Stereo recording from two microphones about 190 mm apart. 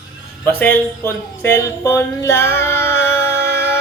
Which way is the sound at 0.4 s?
10° left (ahead or behind).